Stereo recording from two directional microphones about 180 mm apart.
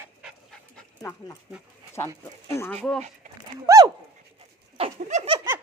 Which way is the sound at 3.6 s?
20° right (ahead or behind).